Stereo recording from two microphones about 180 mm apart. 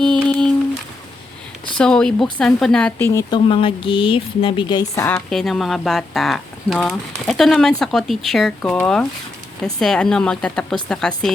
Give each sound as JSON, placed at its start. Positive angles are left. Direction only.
{"t": 0.0, "sound": "a sound", "side_deg": 5}
{"t": 1.8, "sound": "speech", "side_deg": 5}
{"t": 3.1, "sound": "speech", "side_deg": 20}
{"t": 5.3, "sound": "speech", "side_deg": 0}
{"t": 9.8, "sound": "speech", "side_deg": 5}